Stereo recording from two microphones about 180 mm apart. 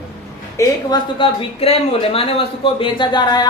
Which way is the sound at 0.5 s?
20° left (ahead or behind).